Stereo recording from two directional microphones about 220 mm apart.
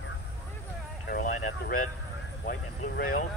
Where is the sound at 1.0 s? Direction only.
40° left (ahead or behind).